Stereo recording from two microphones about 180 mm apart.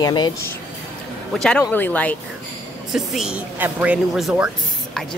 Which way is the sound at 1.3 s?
5° left (ahead or behind).